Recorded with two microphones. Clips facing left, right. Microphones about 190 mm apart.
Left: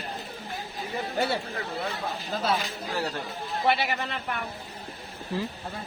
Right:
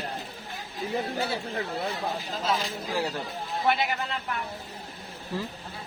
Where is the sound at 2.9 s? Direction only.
10° right (ahead or behind).